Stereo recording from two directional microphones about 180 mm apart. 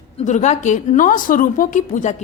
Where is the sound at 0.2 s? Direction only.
40° left (ahead or behind).